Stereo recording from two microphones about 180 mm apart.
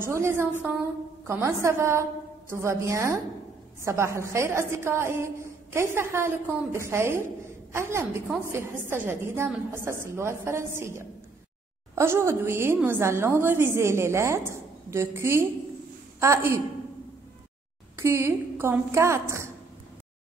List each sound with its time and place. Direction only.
0.0 s a woman's voice: 15° right (ahead or behind)
17.9 s a woman's voice: 15° right (ahead or behind)